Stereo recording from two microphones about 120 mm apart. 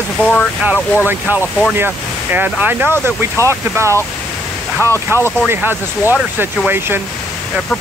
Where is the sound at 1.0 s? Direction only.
15° right (ahead or behind).